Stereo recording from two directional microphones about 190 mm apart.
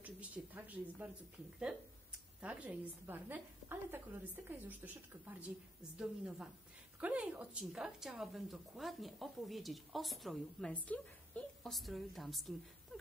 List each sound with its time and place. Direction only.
0.0 s speech: 10° right (ahead or behind)
2.4 s a woman's voice: 5° right (ahead or behind)